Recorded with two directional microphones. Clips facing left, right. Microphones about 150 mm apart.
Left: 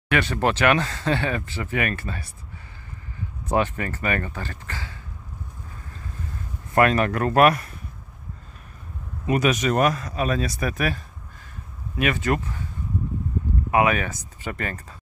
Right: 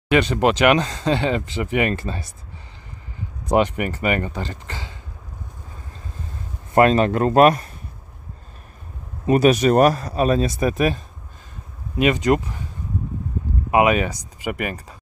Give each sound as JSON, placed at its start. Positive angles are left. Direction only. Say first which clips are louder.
{"t": 0.1, "sound": "speech", "louder": "right 5 dB", "side_deg": -20}
{"t": 3.5, "sound": "speech", "louder": "right 5 dB", "side_deg": -20}
{"t": 6.7, "sound": "speech", "louder": "right 4 dB", "side_deg": -25}
{"t": 9.2, "sound": "speech", "louder": "right 6 dB", "side_deg": -35}
{"t": 12.0, "sound": "speech", "louder": "right 6 dB", "side_deg": -20}
{"t": 13.7, "sound": "speech", "louder": "right 4 dB", "side_deg": -20}